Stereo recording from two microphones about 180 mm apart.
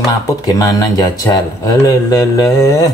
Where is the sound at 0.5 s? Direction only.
20° left (ahead or behind).